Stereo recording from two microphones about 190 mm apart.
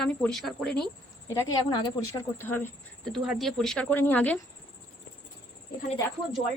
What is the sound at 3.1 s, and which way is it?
Speech, centre (ahead or behind).